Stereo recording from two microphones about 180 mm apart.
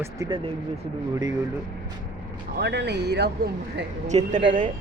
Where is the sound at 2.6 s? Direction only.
70° right (ahead or behind).